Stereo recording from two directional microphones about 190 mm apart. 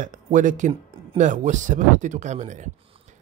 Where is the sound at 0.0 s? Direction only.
40° right (ahead or behind).